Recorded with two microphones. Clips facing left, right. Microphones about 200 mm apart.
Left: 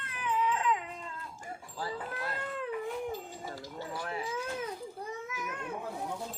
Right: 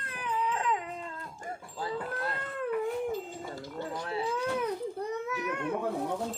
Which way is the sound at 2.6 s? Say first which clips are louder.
Right 6 dB; 55° right (ahead or behind).